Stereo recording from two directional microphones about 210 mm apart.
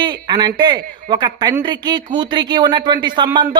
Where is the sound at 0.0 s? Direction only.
20° right (ahead or behind).